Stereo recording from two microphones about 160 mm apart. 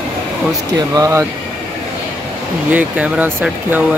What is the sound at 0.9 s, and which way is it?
Speech, 20° right (ahead or behind).